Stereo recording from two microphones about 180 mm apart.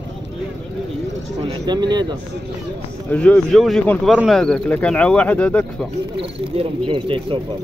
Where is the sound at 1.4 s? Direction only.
25° right (ahead or behind).